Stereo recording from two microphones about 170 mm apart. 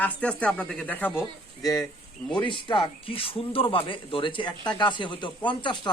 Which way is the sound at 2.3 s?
30° left (ahead or behind).